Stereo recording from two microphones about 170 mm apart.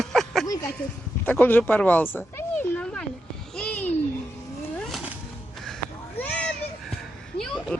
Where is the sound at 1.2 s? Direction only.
10° left (ahead or behind).